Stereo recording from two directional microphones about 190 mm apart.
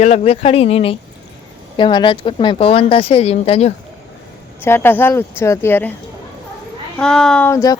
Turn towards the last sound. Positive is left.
turn(degrees=15)  # may be behind; listen again after turning